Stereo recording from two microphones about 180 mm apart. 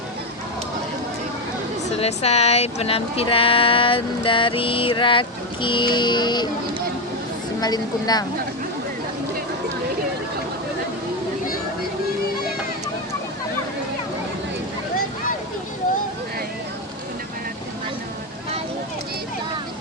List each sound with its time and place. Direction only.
2.0 s speech: 35° left (ahead or behind)
7.6 s speech: 20° left (ahead or behind)